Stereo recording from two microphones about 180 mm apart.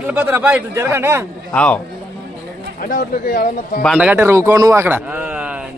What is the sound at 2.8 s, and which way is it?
Speech, 50° left (ahead or behind).